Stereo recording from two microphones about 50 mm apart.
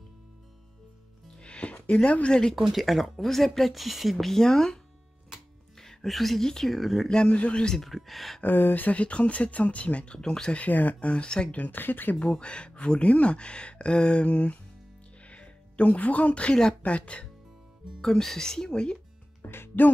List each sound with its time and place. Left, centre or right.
1.4 s music: left
2.0 s speech: left
2.5 s speech: centre
5.8 s speech: centre
7.1 s speech: centre
7.7 s speech: centre
8.4 s speech: left
8.8 s speech: left
10.6 s speech: left; by 11.5 s centre
11.5 s speech: left
12.2 s speech: left
18.0 s speech: centre
19.4 s music: left